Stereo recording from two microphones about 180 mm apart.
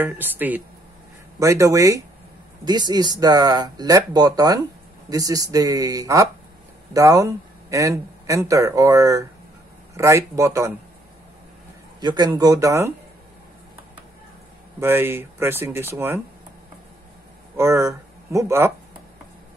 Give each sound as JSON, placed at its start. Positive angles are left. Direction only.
{"t": 0.0, "sound": "speech", "side_deg": -10}
{"t": 12.0, "sound": "speech", "side_deg": -25}
{"t": 14.8, "sound": "speech", "side_deg": -10}
{"t": 17.6, "sound": "speech", "side_deg": -15}